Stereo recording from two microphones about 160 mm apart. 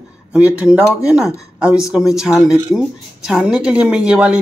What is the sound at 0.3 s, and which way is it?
Speech, 10° right (ahead or behind).